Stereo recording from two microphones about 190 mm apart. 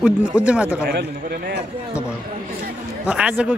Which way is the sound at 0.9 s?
55° right (ahead or behind).